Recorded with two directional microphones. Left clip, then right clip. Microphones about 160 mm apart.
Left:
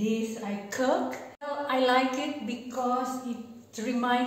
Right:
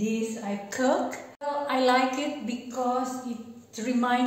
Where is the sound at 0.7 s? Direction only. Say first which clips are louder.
Right 1 dB; 20° right (ahead or behind).